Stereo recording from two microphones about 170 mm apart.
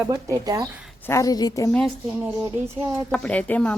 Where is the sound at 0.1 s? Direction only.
20° right (ahead or behind).